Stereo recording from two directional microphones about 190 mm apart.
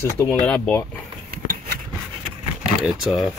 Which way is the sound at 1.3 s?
50° right (ahead or behind).